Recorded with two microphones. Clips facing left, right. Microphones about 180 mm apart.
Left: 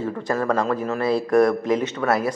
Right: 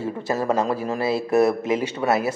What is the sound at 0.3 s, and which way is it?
Speech, 20° right (ahead or behind).